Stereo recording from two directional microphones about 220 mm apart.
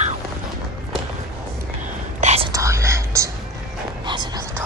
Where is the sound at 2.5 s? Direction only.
15° right (ahead or behind).